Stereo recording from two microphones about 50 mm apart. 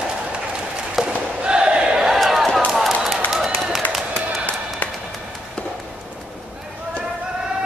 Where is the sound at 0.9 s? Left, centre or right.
Centre.